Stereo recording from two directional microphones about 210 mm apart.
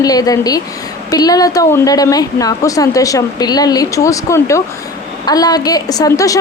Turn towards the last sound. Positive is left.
turn(degrees=15)  # may be behind; listen again after turning